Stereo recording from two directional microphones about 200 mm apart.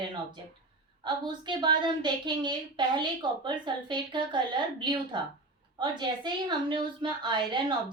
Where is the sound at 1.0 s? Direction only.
20° right (ahead or behind).